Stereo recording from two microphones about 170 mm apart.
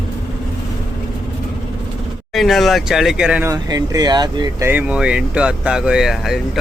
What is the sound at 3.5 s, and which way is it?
Speech, 20° right (ahead or behind).